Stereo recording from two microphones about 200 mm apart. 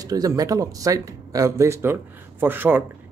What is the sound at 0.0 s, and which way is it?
Speech, 15° right (ahead or behind).